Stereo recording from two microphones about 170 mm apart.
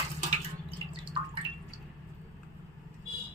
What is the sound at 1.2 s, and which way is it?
Drip, 25° right (ahead or behind).